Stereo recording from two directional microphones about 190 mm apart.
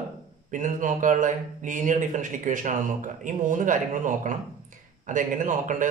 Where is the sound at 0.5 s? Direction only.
40° right (ahead or behind).